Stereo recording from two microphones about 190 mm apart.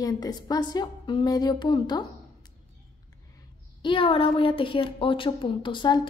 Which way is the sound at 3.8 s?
25° left (ahead or behind).